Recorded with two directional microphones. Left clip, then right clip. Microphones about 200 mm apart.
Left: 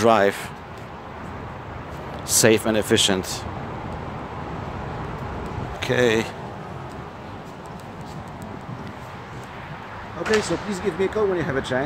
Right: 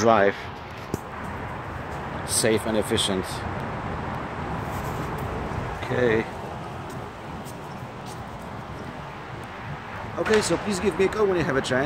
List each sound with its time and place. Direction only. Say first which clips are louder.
0.0 s speech: left 2 dB; 50° left (ahead or behind)
2.2 s speech: left 6 dB; 40° left (ahead or behind)
5.8 s speech: left 3 dB; 50° left (ahead or behind)
10.4 s speech: right 1 dB; centre (ahead or behind)